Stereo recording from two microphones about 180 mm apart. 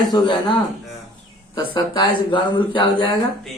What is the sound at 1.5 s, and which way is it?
Speech, 25° left (ahead or behind).